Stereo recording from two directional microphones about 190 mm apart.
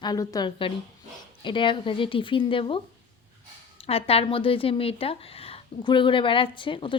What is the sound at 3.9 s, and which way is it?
Speech, 30° left (ahead or behind).